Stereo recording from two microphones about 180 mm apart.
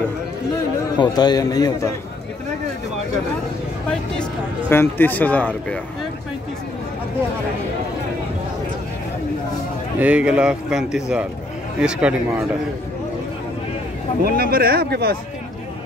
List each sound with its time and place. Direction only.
0.9 s a man's voice: 25° left (ahead or behind)
3.9 s speech: 10° left (ahead or behind)
9.9 s speech: 5° right (ahead or behind)
14.2 s speech: 55° right (ahead or behind)